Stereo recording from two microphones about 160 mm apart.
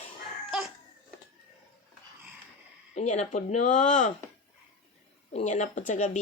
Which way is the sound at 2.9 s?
45° left (ahead or behind).